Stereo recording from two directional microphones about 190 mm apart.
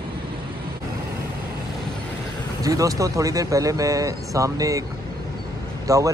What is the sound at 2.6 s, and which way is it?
Speech, 15° right (ahead or behind).